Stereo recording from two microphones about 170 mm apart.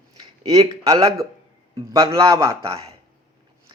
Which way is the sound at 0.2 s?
20° right (ahead or behind).